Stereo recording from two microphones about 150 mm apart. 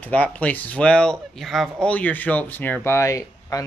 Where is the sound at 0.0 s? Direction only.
10° left (ahead or behind).